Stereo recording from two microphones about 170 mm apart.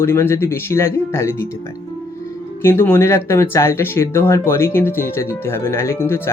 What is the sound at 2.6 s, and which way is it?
Speech, 10° left (ahead or behind).